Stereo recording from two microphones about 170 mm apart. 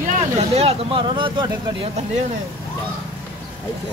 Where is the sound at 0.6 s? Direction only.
35° right (ahead or behind).